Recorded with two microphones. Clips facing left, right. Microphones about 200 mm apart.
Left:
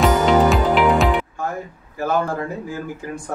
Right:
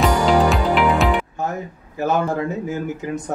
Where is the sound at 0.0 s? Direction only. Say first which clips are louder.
Left 1 dB; centre (ahead or behind).